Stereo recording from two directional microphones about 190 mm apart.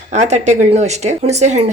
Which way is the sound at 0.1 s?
35° right (ahead or behind).